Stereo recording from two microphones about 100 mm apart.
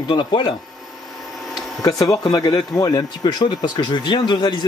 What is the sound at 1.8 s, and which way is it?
Speech, 40° left (ahead or behind).